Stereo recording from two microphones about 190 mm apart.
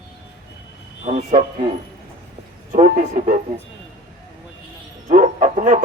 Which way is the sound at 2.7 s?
40° right (ahead or behind).